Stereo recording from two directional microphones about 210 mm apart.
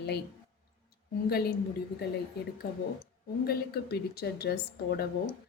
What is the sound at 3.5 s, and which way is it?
A woman's voice, 50° left (ahead or behind).